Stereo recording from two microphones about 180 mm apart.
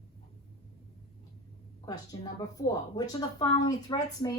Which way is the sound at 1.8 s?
20° left (ahead or behind).